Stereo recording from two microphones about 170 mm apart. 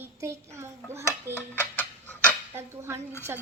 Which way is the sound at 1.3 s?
10° left (ahead or behind).